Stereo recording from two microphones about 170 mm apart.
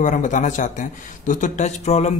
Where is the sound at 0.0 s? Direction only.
45° left (ahead or behind).